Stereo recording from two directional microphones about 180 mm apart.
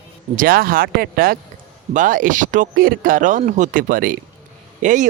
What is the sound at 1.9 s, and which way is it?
A man's voice, 45° right (ahead or behind).